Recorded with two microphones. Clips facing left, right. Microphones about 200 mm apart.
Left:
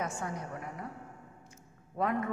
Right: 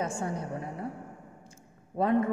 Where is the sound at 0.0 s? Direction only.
30° right (ahead or behind).